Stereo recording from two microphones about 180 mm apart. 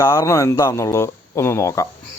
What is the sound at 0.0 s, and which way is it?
Speech, 15° left (ahead or behind).